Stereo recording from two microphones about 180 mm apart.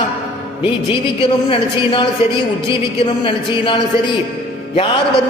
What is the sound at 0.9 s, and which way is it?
Speech, 30° left (ahead or behind).